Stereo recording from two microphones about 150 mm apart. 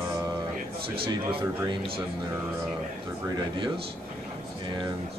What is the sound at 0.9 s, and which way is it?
Speech, 35° right (ahead or behind).